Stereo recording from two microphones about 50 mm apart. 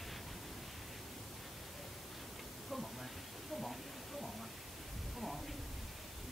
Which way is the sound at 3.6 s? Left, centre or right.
Centre.